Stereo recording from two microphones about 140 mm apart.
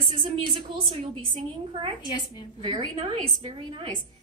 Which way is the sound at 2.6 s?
40° right (ahead or behind).